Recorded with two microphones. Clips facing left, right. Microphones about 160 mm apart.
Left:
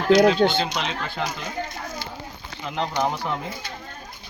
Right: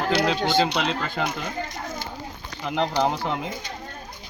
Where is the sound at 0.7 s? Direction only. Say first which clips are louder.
Right 3 dB; 65° right (ahead or behind).